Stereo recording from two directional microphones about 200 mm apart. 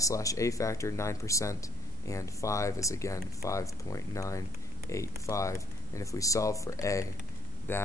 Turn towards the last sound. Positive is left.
turn(degrees=10)  # may be behind; listen again after turning